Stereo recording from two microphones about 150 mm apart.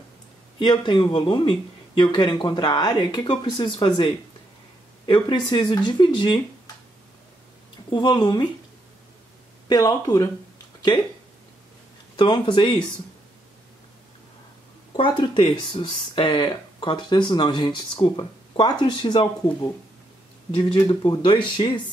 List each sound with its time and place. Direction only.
0.6 s speech: 30° left (ahead or behind)
7.9 s speech: 30° left (ahead or behind)
9.7 s speech: 25° left (ahead or behind)
12.2 s speech: 30° left (ahead or behind)
15.0 s speech: 30° left (ahead or behind)